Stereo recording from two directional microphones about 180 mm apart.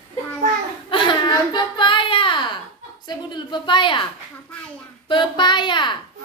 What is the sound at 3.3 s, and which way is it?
Speech, 25° left (ahead or behind).